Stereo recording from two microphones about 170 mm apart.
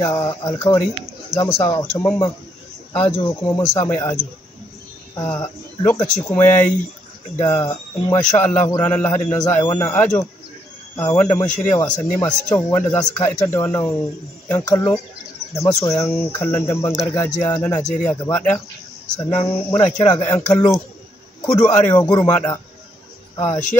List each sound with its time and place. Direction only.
0.0 s speech: 20° left (ahead or behind)
3.3 s speech: 20° left (ahead or behind)
11.1 s speech: 10° left (ahead or behind)